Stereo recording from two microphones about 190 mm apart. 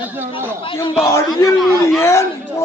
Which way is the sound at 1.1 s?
15° left (ahead or behind).